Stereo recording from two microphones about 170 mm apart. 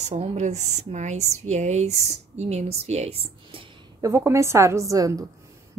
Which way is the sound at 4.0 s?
15° right (ahead or behind).